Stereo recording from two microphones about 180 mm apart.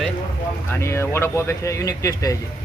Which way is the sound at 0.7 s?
15° left (ahead or behind).